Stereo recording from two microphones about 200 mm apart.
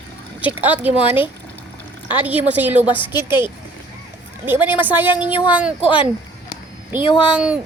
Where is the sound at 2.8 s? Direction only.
25° left (ahead or behind).